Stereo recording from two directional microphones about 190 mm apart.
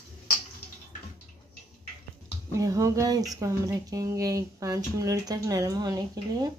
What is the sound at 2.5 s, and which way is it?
Speech, 15° right (ahead or behind).